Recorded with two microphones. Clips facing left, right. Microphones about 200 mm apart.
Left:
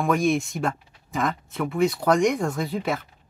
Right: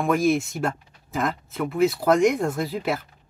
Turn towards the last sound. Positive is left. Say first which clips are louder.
# right 1 dB
turn(degrees=0)  # may be behind; listen again after turning